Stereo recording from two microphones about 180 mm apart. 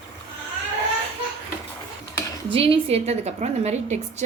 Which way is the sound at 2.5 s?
30° right (ahead or behind).